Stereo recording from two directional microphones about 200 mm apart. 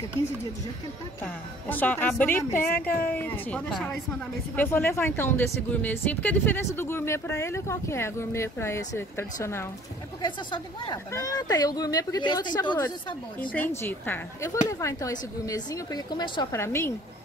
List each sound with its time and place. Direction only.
1.2 s speech: 10° left (ahead or behind)
10.2 s speech: 20° left (ahead or behind)
13.4 s speech: 10° left (ahead or behind)